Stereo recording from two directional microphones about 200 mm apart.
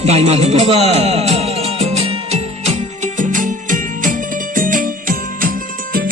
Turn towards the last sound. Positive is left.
turn(degrees=-40)  # may be behind; listen again after turning